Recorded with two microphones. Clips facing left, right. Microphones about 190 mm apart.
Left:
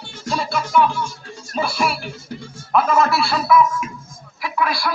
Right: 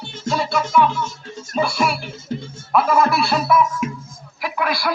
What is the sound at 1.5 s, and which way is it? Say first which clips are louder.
Speech: right 2 dB; centre (ahead or behind).